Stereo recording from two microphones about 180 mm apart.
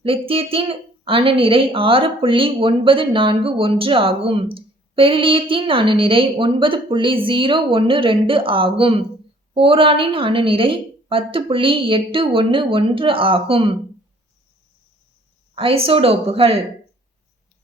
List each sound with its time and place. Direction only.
0.0 s a woman's voice: 30° right (ahead or behind)
15.5 s speech: 30° right (ahead or behind)